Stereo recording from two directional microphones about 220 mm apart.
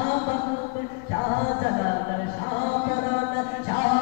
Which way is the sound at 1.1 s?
25° left (ahead or behind).